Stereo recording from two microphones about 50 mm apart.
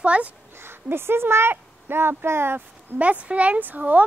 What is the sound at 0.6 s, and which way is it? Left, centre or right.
A woman's voice, right.